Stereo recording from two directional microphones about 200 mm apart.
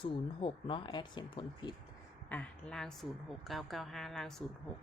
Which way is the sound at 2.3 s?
5° left (ahead or behind).